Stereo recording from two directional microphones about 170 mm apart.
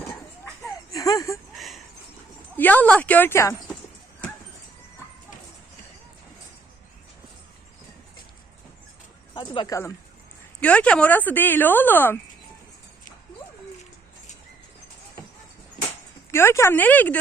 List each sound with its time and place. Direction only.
0.9 s a sound: 20° left (ahead or behind)
1.5 s a sound: centre (ahead or behind)
2.6 s speech: 10° left (ahead or behind)
9.3 s speech: 25° left (ahead or behind)
10.6 s speech: 5° left (ahead or behind)
16.3 s speech: 15° left (ahead or behind)